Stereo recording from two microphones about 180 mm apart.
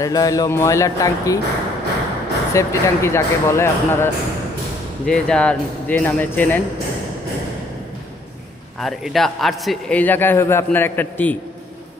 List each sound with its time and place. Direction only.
0.0 s speech: 20° left (ahead or behind)
2.5 s a man's voice: 15° left (ahead or behind)
8.7 s a man's voice: centre (ahead or behind)